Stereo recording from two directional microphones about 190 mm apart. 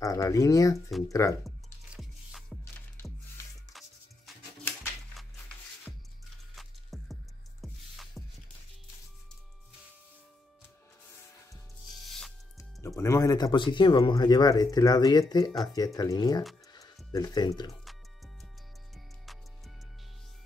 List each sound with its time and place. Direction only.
0.0 s speech: 15° left (ahead or behind)
2.0 s music: centre (ahead or behind)
6.5 s music: centre (ahead or behind)
11.8 s music: centre (ahead or behind)
12.5 s speech: 15° left (ahead or behind)
17.8 s music: centre (ahead or behind)